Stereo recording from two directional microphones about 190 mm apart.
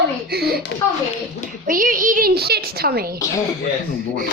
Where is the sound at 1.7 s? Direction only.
45° right (ahead or behind).